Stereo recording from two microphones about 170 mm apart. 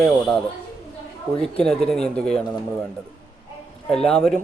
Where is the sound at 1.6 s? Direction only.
5° left (ahead or behind).